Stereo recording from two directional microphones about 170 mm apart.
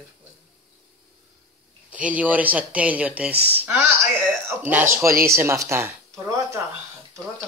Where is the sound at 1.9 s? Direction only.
10° right (ahead or behind).